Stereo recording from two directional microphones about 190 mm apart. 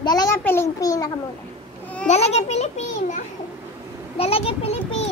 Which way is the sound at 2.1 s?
35° left (ahead or behind).